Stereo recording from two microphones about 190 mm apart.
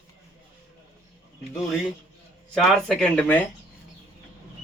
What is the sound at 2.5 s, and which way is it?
Speech, 5° left (ahead or behind).